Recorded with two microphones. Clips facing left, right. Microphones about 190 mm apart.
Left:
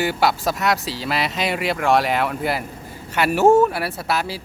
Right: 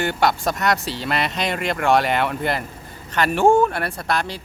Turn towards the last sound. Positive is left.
turn(degrees=5)  # may be behind; listen again after turning